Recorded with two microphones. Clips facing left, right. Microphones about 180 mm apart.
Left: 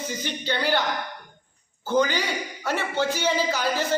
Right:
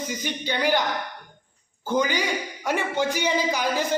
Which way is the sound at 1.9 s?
15° right (ahead or behind).